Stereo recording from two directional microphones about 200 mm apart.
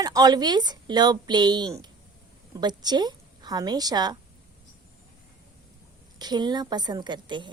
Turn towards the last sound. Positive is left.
turn(degrees=-25)  # may be behind; listen again after turning